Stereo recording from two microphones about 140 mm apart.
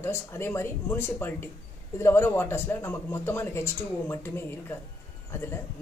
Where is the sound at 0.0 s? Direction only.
15° left (ahead or behind).